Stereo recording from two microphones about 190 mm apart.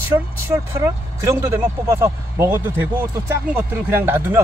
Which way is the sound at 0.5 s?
15° right (ahead or behind).